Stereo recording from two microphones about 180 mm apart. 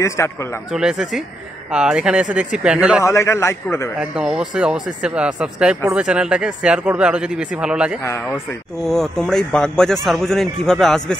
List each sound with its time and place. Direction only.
0.0 s a man's voice: 15° left (ahead or behind)
0.7 s speech: 5° right (ahead or behind)
3.0 s a man's voice: 15° left (ahead or behind)
4.0 s speech: 5° right (ahead or behind)
8.0 s speech: 10° left (ahead or behind)